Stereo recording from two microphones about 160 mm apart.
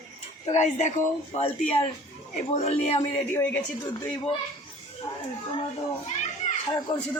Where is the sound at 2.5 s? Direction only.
40° left (ahead or behind).